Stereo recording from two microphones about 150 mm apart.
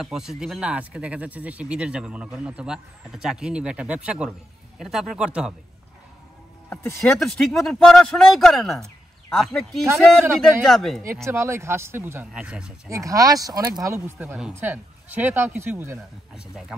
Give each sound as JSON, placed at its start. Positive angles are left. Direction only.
{"t": 0.0, "sound": "speech", "side_deg": -5}
{"t": 6.7, "sound": "speech", "side_deg": 20}
{"t": 7.2, "sound": "speech", "side_deg": 5}
{"t": 11.2, "sound": "speech", "side_deg": -20}
{"t": 12.8, "sound": "speech", "side_deg": -20}